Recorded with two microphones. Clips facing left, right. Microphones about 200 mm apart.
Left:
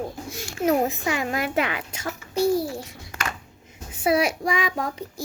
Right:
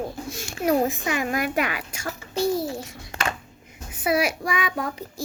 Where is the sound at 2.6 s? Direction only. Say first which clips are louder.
Right 1 dB; 25° right (ahead or behind).